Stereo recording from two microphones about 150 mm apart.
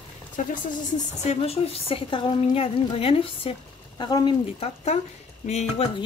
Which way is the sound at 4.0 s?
30° left (ahead or behind).